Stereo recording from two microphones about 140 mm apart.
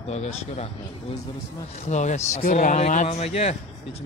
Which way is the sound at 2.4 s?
70° left (ahead or behind).